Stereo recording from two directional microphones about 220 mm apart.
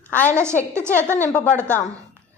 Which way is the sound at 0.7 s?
10° right (ahead or behind).